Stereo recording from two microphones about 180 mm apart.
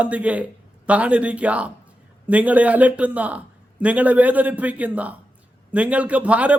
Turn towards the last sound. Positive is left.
turn(degrees=-5)  # may be behind; listen again after turning